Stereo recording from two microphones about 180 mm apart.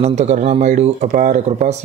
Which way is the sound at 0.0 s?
40° right (ahead or behind).